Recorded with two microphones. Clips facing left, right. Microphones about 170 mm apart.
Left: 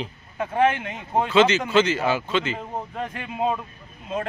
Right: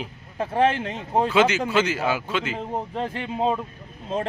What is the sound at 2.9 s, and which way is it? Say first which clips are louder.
Speech: right 3 dB; 30° right (ahead or behind).